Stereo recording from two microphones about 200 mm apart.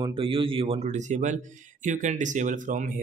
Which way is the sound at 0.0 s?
25° right (ahead or behind).